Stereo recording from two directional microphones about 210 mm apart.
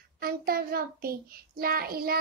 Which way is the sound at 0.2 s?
45° right (ahead or behind).